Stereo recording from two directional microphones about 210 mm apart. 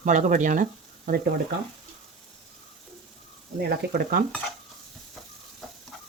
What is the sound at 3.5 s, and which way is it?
Speech, 50° right (ahead or behind).